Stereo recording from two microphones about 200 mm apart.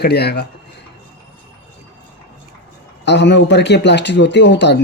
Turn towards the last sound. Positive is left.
turn(degrees=60)  # may be behind; listen again after turning